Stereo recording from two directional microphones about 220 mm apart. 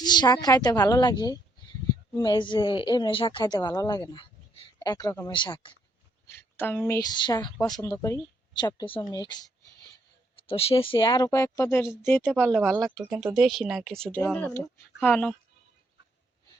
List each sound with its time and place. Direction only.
0.0 s a woman's voice: 20° left (ahead or behind)
6.2 s a woman's voice: 10° left (ahead or behind)